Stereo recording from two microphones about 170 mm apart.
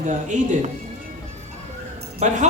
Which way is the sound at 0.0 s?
45° right (ahead or behind).